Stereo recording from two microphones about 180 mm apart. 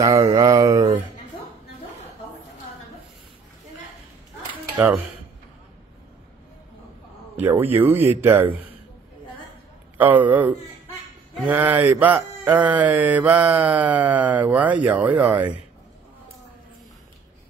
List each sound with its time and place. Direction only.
0.0 s a sound: 20° right (ahead or behind)
4.7 s speech: 10° right (ahead or behind)
7.3 s speech: 10° right (ahead or behind)
9.9 s speech: 10° right (ahead or behind)